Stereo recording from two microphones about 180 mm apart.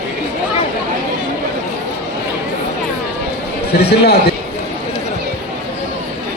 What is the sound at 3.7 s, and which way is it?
Speech, 65° left (ahead or behind).